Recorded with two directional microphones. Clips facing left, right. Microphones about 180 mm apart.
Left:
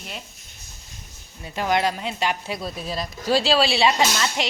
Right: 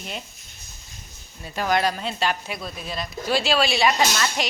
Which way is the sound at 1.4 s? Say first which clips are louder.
Even; 20° left (ahead or behind).